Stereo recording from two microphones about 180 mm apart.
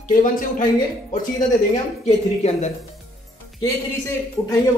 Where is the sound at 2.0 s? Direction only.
40° left (ahead or behind).